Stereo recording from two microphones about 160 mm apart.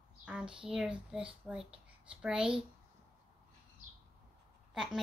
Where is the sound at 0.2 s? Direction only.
5° right (ahead or behind).